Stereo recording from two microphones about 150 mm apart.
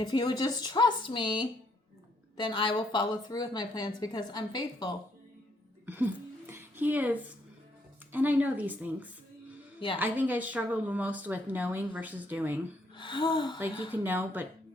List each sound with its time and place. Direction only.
0.0 s speech: 30° left (ahead or behind)
5.8 s speech: 10° right (ahead or behind)
6.5 s a sound: 15° right (ahead or behind)
8.1 s a woman's voice: 10° right (ahead or behind)
13.0 s speech: 30° left (ahead or behind)
13.9 s a woman's voice: 10° right (ahead or behind)